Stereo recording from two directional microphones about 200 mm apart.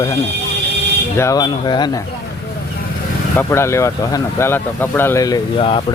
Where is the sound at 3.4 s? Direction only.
15° left (ahead or behind).